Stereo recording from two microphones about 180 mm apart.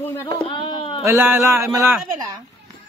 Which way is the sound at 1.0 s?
15° right (ahead or behind).